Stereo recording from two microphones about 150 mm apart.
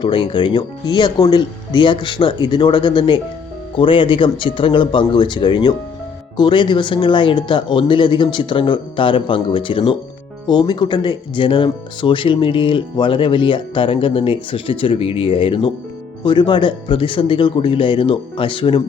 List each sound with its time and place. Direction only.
0.0 s speech: 35° left (ahead or behind)